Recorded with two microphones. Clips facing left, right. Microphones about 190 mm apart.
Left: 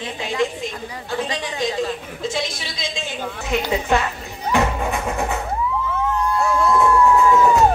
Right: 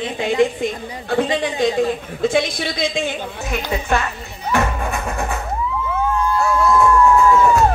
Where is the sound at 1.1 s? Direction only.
55° right (ahead or behind).